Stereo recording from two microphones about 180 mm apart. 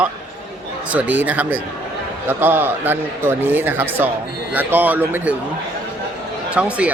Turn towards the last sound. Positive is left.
turn(degrees=-5)  # may be behind; listen again after turning